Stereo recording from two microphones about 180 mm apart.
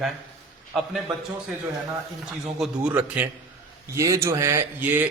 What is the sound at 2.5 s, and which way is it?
A man's voice, 5° right (ahead or behind).